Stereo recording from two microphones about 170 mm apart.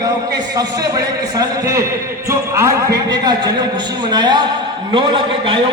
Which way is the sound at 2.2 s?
15° right (ahead or behind).